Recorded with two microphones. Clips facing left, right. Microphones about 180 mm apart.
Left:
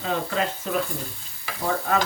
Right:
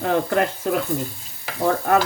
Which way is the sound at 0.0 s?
60° right (ahead or behind).